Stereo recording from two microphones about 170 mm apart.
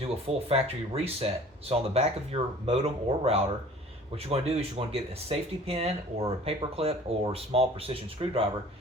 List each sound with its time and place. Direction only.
0.3 s speech: 35° right (ahead or behind)